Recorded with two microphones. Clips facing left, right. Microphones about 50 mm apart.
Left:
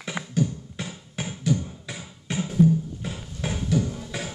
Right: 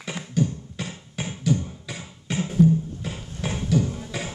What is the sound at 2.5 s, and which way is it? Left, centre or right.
Music, centre.